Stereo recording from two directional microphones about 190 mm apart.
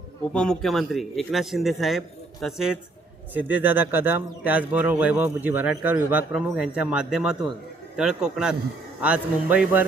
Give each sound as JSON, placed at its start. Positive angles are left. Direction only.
{"t": 0.3, "sound": "a man's voice", "side_deg": 5}